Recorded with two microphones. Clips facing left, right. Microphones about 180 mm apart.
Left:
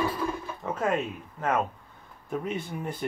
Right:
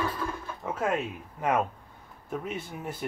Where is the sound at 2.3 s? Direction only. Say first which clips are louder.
Left 3 dB; 5° right (ahead or behind).